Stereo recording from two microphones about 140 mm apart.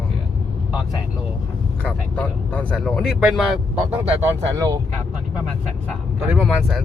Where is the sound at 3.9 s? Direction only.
20° right (ahead or behind).